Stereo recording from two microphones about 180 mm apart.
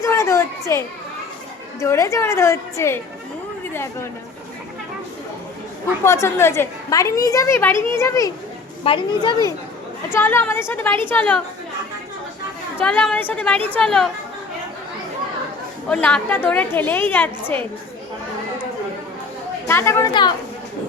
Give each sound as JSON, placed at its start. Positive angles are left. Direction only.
{"t": 0.0, "sound": "a sound", "side_deg": 15}
{"t": 1.8, "sound": "a woman's voice", "side_deg": 15}
{"t": 6.1, "sound": "a woman's voice", "side_deg": 15}
{"t": 8.8, "sound": "a woman's voice", "side_deg": 30}
{"t": 10.1, "sound": "a woman's voice", "side_deg": 10}
{"t": 12.8, "sound": "a woman's voice", "side_deg": 5}
{"t": 15.9, "sound": "a woman's voice", "side_deg": 5}
{"t": 19.6, "sound": "a woman's voice", "side_deg": 15}